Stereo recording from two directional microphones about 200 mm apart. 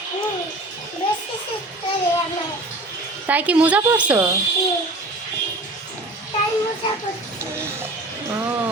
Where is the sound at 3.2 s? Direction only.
5° right (ahead or behind).